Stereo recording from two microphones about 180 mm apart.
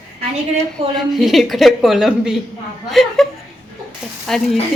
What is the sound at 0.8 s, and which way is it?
Speech, 30° right (ahead or behind).